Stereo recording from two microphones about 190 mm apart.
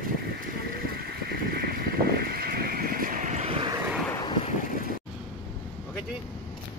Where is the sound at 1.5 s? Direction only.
50° right (ahead or behind); by 3.7 s 30° right (ahead or behind).